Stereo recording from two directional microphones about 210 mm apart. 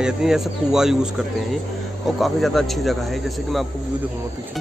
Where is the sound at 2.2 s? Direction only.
Centre (ahead or behind).